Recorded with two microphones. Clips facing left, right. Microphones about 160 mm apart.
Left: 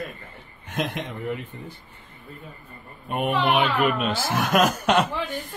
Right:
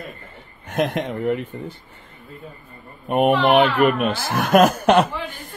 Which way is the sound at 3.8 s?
50° right (ahead or behind).